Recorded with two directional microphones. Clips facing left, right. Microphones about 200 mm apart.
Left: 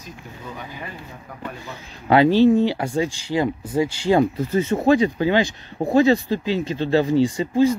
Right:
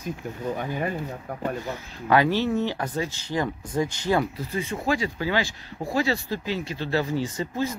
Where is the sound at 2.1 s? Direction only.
15° left (ahead or behind).